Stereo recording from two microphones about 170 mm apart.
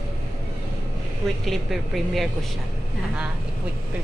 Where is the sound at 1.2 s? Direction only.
Centre (ahead or behind).